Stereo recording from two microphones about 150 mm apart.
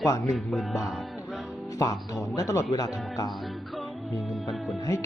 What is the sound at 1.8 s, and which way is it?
Speech, 25° left (ahead or behind).